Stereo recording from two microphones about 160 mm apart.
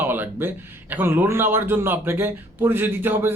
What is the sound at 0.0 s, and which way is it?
A man's voice, 10° right (ahead or behind).